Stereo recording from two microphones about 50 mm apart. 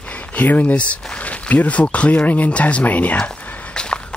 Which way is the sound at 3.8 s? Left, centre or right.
Centre.